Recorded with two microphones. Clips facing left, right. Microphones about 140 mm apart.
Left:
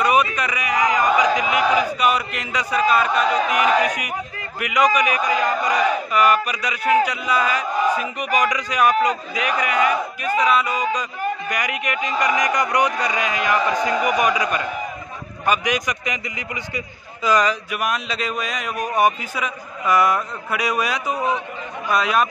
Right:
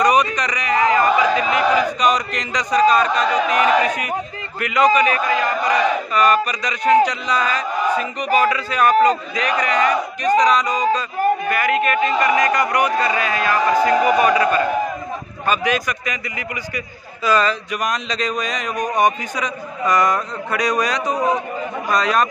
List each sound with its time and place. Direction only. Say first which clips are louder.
0.0 s a sound: right 2 dB; 5° left (ahead or behind)
4.6 s speech: right 3 dB; 10° left (ahead or behind)
10.7 s speech: right 4 dB; 35° right (ahead or behind)
11.4 s a man's voice: right 7 dB; 15° left (ahead or behind)